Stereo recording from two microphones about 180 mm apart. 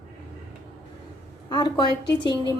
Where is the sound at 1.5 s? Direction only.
25° left (ahead or behind).